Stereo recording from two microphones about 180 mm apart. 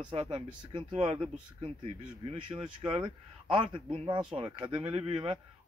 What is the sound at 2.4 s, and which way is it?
Speech, 25° right (ahead or behind).